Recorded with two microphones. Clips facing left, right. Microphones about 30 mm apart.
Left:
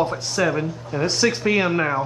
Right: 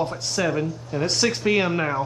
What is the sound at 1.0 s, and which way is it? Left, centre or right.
Speech, centre.